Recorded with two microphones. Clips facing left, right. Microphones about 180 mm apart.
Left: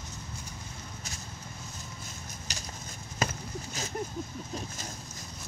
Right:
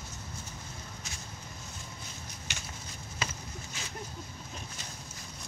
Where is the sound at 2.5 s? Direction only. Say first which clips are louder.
Left 1 dB; 35° left (ahead or behind).